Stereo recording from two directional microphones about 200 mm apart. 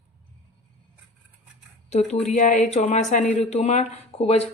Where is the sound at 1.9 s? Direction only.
35° left (ahead or behind).